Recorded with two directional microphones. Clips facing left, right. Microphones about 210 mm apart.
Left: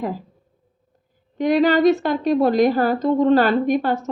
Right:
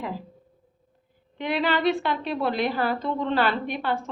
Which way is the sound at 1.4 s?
40° left (ahead or behind).